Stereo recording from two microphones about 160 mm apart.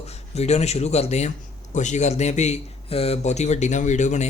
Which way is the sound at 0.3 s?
40° left (ahead or behind).